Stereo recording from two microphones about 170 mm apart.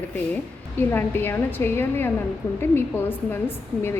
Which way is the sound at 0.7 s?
10° left (ahead or behind).